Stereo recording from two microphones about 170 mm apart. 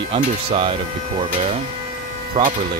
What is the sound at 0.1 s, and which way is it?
Speech, 35° right (ahead or behind).